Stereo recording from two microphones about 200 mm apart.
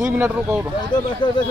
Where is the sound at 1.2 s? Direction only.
25° left (ahead or behind).